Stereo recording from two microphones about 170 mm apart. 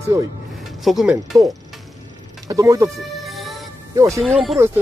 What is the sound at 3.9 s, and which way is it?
Speech, 20° right (ahead or behind).